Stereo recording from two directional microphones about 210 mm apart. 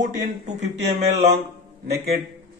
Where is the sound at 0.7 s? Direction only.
55° right (ahead or behind).